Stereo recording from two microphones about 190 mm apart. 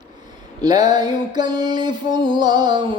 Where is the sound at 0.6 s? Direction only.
20° right (ahead or behind).